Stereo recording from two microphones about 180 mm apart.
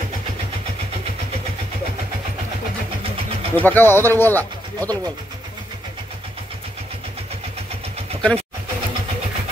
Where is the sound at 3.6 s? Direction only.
10° left (ahead or behind).